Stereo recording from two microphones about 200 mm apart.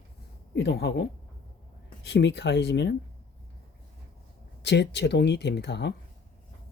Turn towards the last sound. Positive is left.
turn(degrees=60)  # may be behind; listen again after turning